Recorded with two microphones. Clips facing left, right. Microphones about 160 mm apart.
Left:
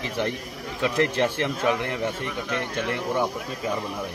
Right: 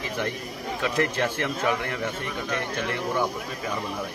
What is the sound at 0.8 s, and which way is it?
Speech, 25° left (ahead or behind).